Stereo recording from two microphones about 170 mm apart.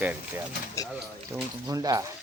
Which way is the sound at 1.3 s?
20° right (ahead or behind).